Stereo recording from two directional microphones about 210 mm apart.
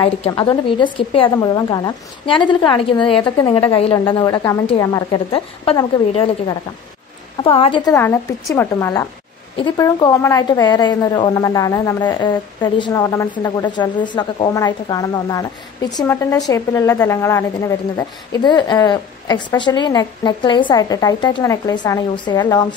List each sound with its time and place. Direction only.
0.0 s a woman's voice: 25° left (ahead or behind)
7.4 s a woman's voice: 25° left (ahead or behind)
7.9 s a woman's voice: 10° left (ahead or behind)